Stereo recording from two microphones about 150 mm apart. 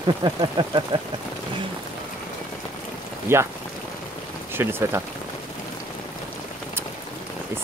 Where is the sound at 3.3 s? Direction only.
15° right (ahead or behind).